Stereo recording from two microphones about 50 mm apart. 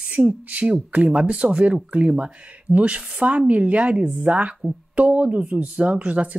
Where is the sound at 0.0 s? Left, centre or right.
Right.